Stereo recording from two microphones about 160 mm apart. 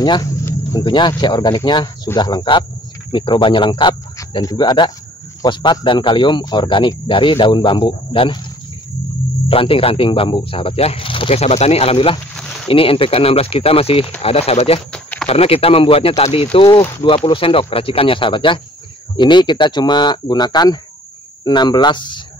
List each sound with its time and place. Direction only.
0.0 s speech: 25° left (ahead or behind)
9.5 s speech: 35° left (ahead or behind)
12.4 s a sound: 5° left (ahead or behind)
12.6 s speech: 35° left (ahead or behind)
14.9 s a sound: 5° left (ahead or behind)
15.2 s speech: 40° left (ahead or behind)
16.5 s speech: 25° left (ahead or behind)